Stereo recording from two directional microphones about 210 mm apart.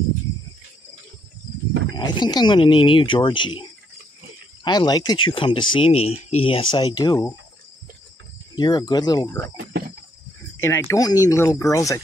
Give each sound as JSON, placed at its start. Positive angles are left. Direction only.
{"t": 2.0, "sound": "speech", "side_deg": 20}
{"t": 4.6, "sound": "speech", "side_deg": 20}
{"t": 8.5, "sound": "speech", "side_deg": 20}
{"t": 9.7, "sound": "cricket", "side_deg": -45}
{"t": 10.6, "sound": "speech", "side_deg": 10}